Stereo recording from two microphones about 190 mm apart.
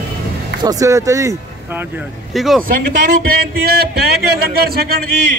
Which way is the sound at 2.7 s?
45° right (ahead or behind).